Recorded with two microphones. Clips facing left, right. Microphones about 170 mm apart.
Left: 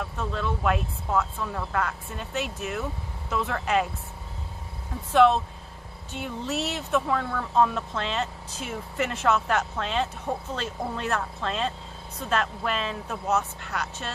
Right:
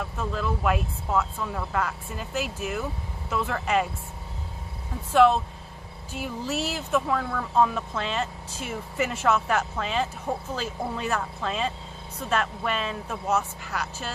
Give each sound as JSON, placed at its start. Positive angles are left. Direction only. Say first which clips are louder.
{"t": 0.0, "sound": "speech", "louder": "right 1 dB", "side_deg": 0}
{"t": 5.1, "sound": "speech", "louder": "even", "side_deg": 0}